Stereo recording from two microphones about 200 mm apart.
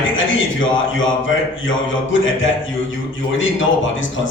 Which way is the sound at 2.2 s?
75° left (ahead or behind).